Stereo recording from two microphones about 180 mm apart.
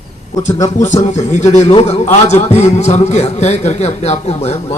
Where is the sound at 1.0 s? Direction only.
40° left (ahead or behind).